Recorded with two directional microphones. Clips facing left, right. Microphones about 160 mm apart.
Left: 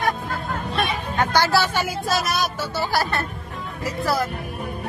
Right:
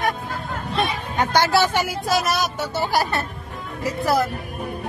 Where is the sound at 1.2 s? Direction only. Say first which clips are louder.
Right 1 dB; 20° right (ahead or behind).